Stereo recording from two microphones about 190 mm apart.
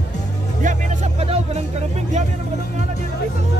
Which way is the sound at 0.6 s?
40° right (ahead or behind).